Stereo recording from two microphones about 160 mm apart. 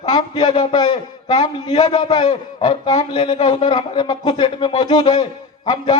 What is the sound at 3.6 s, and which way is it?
A man's voice, 30° left (ahead or behind).